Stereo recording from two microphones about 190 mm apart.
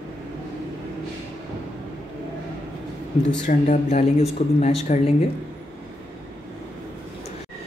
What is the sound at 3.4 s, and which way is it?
Speech, 40° left (ahead or behind).